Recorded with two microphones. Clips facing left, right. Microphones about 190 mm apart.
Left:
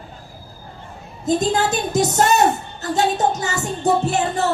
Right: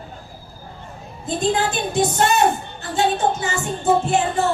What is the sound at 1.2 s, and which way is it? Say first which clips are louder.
A woman's voice: left 2 dB; 40° left (ahead or behind).